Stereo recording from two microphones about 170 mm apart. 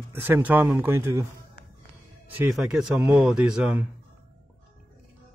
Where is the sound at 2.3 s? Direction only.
5° right (ahead or behind).